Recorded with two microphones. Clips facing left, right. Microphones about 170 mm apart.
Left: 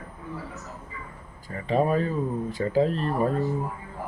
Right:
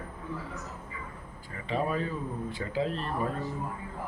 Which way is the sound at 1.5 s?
40° left (ahead or behind).